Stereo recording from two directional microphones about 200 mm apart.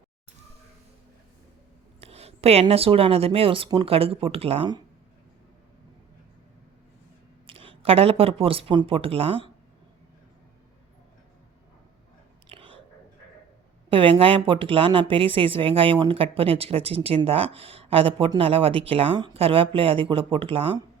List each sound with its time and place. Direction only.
2.0 s a woman's voice: 30° right (ahead or behind)
7.4 s speech: 25° right (ahead or behind)
12.5 s whispering: 25° right (ahead or behind)
13.9 s a woman's voice: 25° right (ahead or behind)